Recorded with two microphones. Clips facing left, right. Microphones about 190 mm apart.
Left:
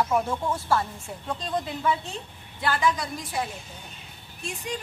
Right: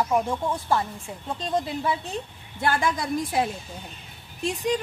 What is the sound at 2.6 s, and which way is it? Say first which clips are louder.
Speech: right 1 dB; 50° right (ahead or behind).